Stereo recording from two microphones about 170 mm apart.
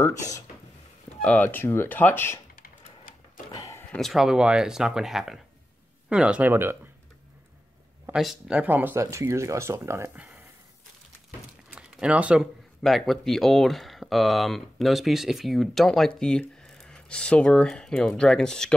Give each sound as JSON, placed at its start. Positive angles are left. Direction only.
{"t": 1.2, "sound": "speech", "side_deg": 10}
{"t": 3.5, "sound": "a sound", "side_deg": 20}
{"t": 3.9, "sound": "speech", "side_deg": 0}
{"t": 8.1, "sound": "speech", "side_deg": -5}
{"t": 11.7, "sound": "speech", "side_deg": -5}